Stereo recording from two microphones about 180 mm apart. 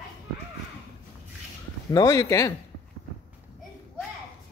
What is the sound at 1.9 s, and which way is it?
Speech, 20° left (ahead or behind).